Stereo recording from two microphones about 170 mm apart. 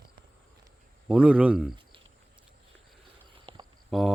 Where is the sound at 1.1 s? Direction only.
5° right (ahead or behind).